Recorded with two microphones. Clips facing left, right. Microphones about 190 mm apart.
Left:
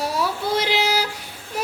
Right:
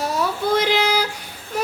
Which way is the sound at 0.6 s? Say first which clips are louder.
Right 1 dB; 5° left (ahead or behind).